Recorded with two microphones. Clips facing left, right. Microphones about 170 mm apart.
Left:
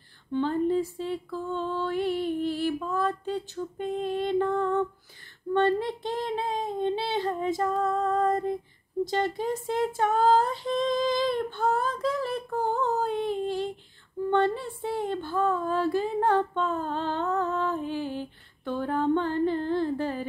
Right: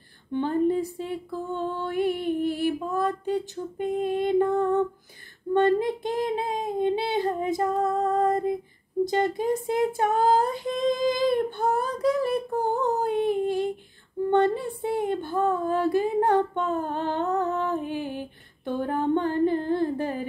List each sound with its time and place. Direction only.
0.3 s female singing: 15° right (ahead or behind)